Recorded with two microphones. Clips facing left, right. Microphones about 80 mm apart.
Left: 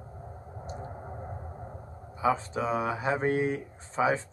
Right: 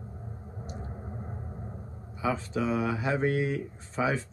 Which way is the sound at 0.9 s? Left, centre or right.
Centre.